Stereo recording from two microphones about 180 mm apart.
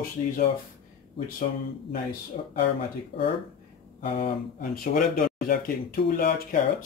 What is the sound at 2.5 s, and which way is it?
Speech, 55° left (ahead or behind).